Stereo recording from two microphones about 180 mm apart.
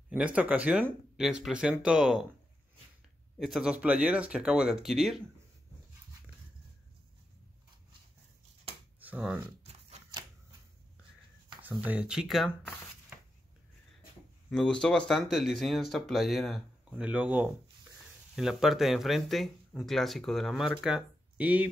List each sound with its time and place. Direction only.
0.1 s speech: 10° right (ahead or behind)
3.3 s speech: centre (ahead or behind)
9.0 s speech: 5° right (ahead or behind)
9.6 s shuffling cards: 35° right (ahead or behind)
11.8 s speech: 10° right (ahead or behind)
14.5 s speech: 5° left (ahead or behind)